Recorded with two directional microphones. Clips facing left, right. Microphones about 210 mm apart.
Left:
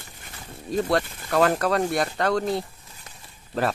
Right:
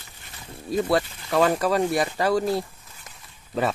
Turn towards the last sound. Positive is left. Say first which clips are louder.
# even
turn(degrees=0)  # may be behind; listen again after turning